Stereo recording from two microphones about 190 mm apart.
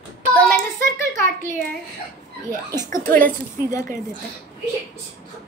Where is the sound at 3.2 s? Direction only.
10° left (ahead or behind).